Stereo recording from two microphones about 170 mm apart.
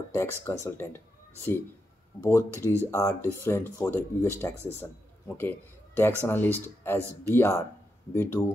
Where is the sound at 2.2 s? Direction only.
15° left (ahead or behind).